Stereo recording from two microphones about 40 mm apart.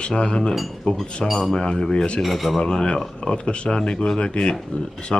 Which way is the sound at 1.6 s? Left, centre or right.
Centre.